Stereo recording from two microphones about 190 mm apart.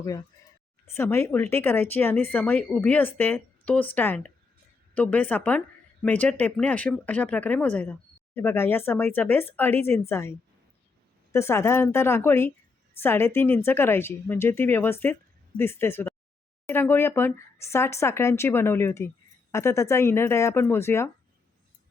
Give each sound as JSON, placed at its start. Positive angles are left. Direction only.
{"t": 0.0, "sound": "speech", "side_deg": 20}